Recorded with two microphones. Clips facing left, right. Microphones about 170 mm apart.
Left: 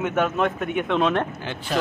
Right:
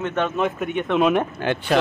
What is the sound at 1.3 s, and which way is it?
Speech, 65° right (ahead or behind).